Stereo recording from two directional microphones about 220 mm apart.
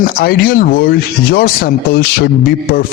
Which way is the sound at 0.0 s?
40° left (ahead or behind).